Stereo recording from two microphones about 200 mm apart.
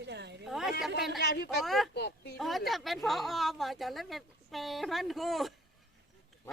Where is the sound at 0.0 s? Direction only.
60° right (ahead or behind).